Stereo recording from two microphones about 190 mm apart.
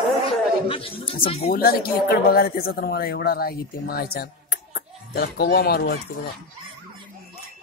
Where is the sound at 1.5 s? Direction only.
50° left (ahead or behind).